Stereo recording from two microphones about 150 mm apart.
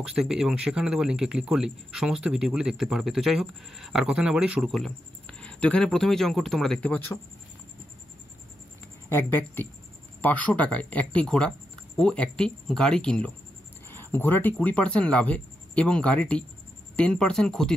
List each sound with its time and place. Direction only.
0.0 s speech: 5° right (ahead or behind)
9.1 s speech: 15° left (ahead or behind)